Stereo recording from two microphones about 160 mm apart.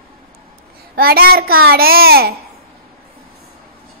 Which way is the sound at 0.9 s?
70° right (ahead or behind).